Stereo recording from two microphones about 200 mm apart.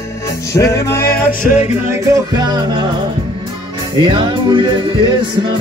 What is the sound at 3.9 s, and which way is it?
Music, 25° right (ahead or behind).